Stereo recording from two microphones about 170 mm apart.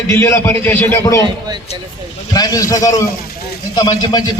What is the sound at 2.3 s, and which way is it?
A man's voice, 20° left (ahead or behind).